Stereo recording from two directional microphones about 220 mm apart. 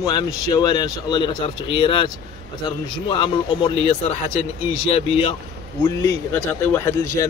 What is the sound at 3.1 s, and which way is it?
Speech, 25° left (ahead or behind).